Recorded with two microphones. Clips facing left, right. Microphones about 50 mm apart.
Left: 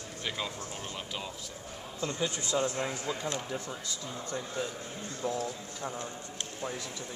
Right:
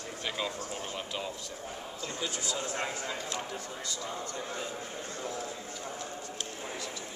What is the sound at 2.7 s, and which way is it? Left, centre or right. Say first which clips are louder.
Speech: even; right.